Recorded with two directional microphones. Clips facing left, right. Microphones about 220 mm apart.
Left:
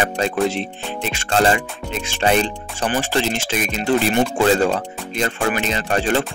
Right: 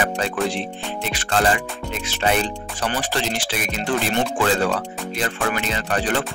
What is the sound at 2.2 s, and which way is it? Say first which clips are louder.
Speech: left 3 dB; 25° left (ahead or behind).